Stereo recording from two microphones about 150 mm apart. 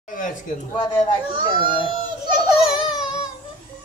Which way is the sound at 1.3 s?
30° right (ahead or behind).